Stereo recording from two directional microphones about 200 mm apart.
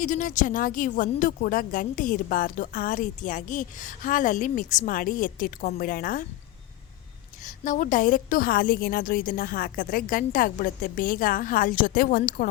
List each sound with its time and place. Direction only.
0.0 s speech: 40° left (ahead or behind)
7.4 s speech: 40° left (ahead or behind)